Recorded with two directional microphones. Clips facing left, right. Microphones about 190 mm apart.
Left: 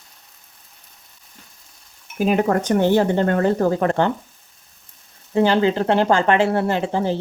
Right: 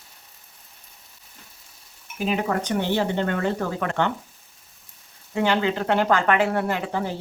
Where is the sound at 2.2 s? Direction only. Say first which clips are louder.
Left 6 dB; 45° left (ahead or behind).